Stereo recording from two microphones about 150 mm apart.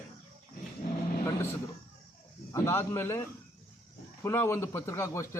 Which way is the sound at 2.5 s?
15° left (ahead or behind).